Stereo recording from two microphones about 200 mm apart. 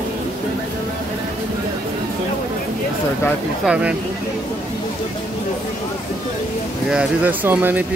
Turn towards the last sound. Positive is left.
turn(degrees=-10)  # may be behind; listen again after turning